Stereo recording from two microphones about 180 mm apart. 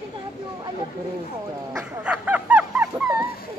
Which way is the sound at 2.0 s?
5° right (ahead or behind).